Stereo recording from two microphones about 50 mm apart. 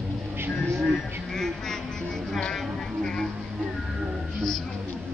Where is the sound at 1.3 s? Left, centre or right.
Centre.